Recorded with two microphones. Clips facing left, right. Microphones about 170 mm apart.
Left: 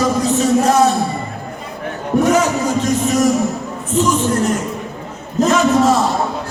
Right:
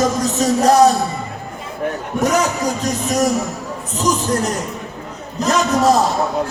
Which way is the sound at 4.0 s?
40° right (ahead or behind).